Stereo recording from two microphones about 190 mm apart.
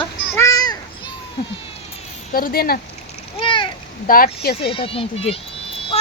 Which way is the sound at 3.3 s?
25° left (ahead or behind).